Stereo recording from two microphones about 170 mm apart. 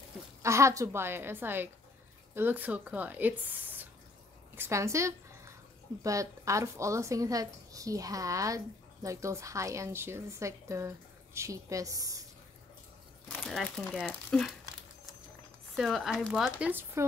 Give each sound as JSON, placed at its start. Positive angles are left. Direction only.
{"t": 0.4, "sound": "a woman's voice", "side_deg": -15}
{"t": 13.3, "sound": "speech", "side_deg": 0}
{"t": 15.7, "sound": "speech", "side_deg": 0}